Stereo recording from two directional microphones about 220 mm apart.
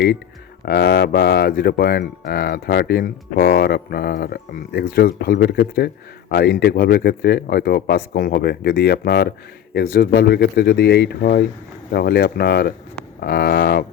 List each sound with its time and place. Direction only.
0.6 s speech: 45° left (ahead or behind)